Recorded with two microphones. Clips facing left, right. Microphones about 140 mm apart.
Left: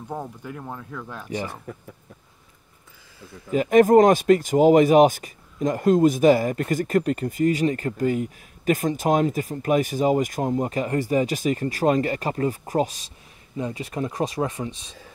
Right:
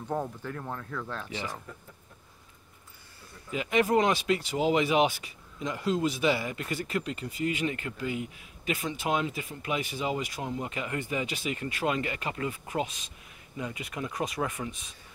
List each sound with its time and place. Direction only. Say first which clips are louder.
0.1 s speech: right 1 dB; 10° left (ahead or behind)
1.3 s speech: left 7 dB; 50° left (ahead or behind)
3.4 s speech: left 11 dB; 45° left (ahead or behind); by 14.9 s 30° left (ahead or behind)